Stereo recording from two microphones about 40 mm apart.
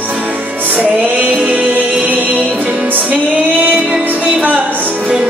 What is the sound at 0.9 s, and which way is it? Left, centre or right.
Music, right.